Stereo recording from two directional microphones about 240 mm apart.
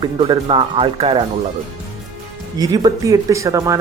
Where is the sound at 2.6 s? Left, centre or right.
Centre.